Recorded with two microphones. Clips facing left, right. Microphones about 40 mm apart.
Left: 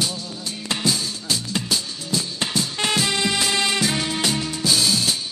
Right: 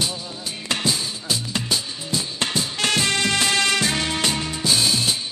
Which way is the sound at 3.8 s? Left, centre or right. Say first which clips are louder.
Even; centre.